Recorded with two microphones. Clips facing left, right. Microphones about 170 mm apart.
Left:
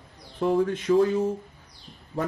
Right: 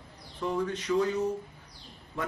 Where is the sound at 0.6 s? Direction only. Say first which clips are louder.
Left 6 dB; 50° left (ahead or behind).